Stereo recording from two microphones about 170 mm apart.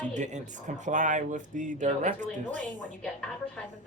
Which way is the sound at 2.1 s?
10° left (ahead or behind).